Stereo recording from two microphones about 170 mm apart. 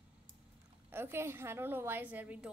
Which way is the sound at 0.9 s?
15° right (ahead or behind).